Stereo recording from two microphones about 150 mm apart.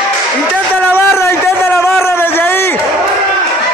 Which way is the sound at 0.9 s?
15° left (ahead or behind).